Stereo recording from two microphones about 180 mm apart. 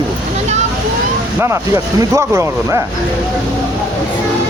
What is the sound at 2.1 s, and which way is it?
Speech, 15° right (ahead or behind).